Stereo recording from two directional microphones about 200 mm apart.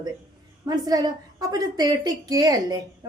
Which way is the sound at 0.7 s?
20° right (ahead or behind).